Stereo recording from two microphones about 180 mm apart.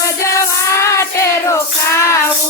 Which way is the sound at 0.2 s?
15° left (ahead or behind).